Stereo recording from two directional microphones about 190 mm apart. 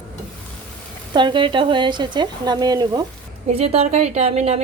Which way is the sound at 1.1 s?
25° right (ahead or behind).